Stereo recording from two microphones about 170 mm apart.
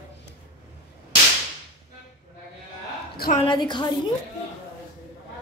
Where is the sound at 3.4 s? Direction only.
25° left (ahead or behind).